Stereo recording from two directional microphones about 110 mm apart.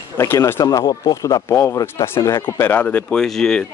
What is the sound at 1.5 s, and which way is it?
Speech, 20° left (ahead or behind).